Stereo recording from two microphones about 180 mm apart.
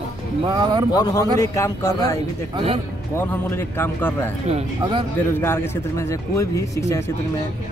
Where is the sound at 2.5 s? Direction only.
30° right (ahead or behind).